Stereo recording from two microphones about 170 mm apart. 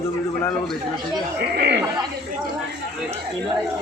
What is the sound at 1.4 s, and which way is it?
Speech, 75° right (ahead or behind).